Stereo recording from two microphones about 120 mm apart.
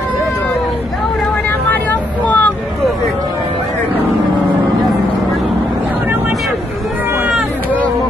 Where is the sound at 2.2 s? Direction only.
15° left (ahead or behind).